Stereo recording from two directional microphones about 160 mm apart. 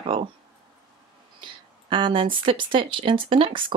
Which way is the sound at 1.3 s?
30° right (ahead or behind).